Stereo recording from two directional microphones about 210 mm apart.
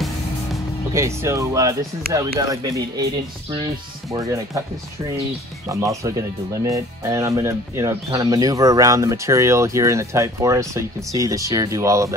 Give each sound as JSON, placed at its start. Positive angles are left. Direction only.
{"t": 0.9, "sound": "speech", "side_deg": -15}
{"t": 5.7, "sound": "speech", "side_deg": -15}